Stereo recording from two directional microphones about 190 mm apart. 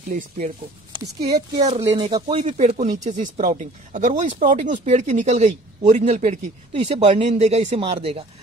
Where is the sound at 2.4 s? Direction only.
40° right (ahead or behind).